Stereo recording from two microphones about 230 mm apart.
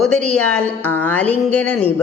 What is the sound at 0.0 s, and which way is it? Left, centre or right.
A woman's voice, centre.